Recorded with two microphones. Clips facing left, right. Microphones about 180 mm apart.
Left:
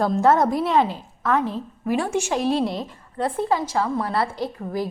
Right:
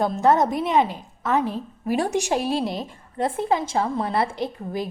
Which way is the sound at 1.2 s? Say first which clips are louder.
Even; 25° right (ahead or behind).